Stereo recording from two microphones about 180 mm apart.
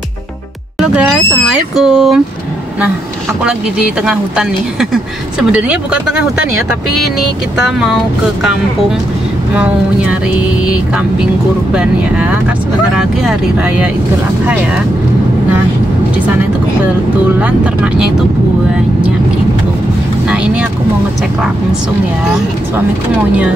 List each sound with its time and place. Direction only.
1.5 s speech: centre (ahead or behind)
3.4 s speech: 5° right (ahead or behind)
7.6 s speech: centre (ahead or behind)
11.7 s speech: 5° right (ahead or behind)
17.4 s speech: 5° right (ahead or behind)